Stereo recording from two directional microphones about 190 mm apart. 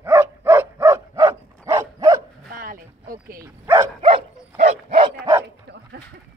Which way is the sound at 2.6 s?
45° right (ahead or behind).